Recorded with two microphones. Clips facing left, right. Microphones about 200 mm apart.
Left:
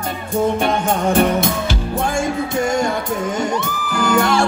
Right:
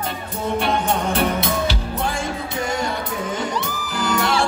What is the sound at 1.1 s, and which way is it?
Music, 45° left (ahead or behind).